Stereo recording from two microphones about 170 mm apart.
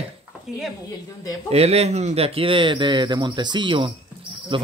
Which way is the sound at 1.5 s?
40° right (ahead or behind).